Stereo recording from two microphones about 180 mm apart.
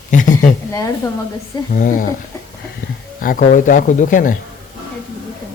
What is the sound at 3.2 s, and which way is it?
Speech, 50° left (ahead or behind).